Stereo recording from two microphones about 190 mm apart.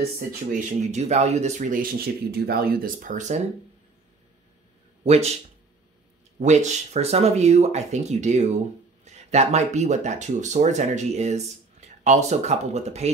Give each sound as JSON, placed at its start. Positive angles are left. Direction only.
{"t": 0.5, "sound": "speech", "side_deg": -40}
{"t": 5.0, "sound": "speech", "side_deg": -35}
{"t": 6.4, "sound": "speech", "side_deg": -35}